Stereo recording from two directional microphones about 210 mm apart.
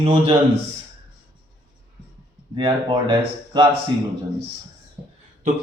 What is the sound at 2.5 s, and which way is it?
Speech, 20° right (ahead or behind).